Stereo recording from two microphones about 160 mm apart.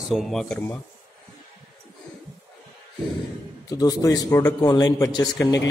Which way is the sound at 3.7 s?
25° left (ahead or behind).